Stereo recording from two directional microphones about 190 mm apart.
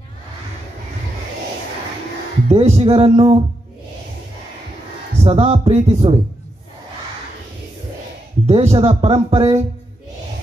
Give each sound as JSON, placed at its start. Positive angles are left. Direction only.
{"t": 2.4, "sound": "speech", "side_deg": -35}
{"t": 5.2, "sound": "speech", "side_deg": -30}
{"t": 8.5, "sound": "speech", "side_deg": -30}